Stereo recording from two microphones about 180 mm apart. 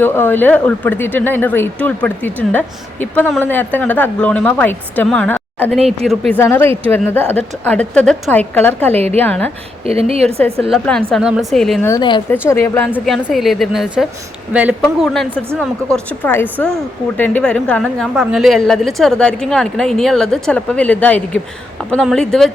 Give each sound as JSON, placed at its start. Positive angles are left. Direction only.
{"t": 0.0, "sound": "a woman's voice", "side_deg": 10}
{"t": 9.8, "sound": "speech", "side_deg": -35}
{"t": 10.7, "sound": "a woman's voice", "side_deg": 5}
{"t": 11.9, "sound": "a woman's voice", "side_deg": 25}
{"t": 12.5, "sound": "speech", "side_deg": 10}
{"t": 12.9, "sound": "a woman's voice", "side_deg": 0}